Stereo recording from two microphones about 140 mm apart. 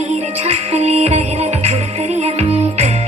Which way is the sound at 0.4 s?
50° right (ahead or behind).